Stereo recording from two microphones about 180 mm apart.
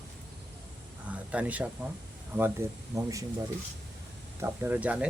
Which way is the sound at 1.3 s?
5° right (ahead or behind).